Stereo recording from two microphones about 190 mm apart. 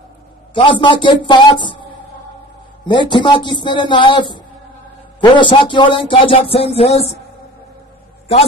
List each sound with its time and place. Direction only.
0.6 s speech: 25° left (ahead or behind)
2.9 s speech: 25° left (ahead or behind)